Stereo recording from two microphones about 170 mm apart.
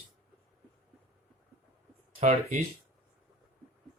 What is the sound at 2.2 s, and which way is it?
Speech, 40° right (ahead or behind).